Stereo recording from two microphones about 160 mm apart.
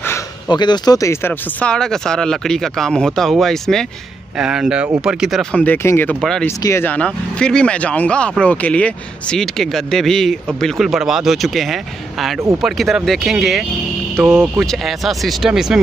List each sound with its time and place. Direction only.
0.5 s speech: 25° left (ahead or behind)
1.6 s speech: 5° left (ahead or behind)
14.1 s speech: 15° right (ahead or behind)
14.6 s speech: centre (ahead or behind)